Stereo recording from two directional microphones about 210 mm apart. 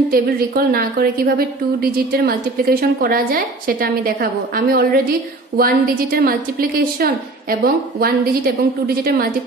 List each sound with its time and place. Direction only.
0.1 s a woman's voice: 45° right (ahead or behind)